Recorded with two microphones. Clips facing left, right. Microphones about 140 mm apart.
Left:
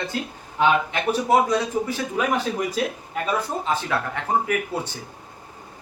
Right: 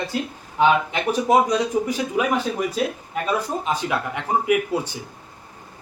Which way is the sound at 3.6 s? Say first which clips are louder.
Right 1 dB; 15° right (ahead or behind).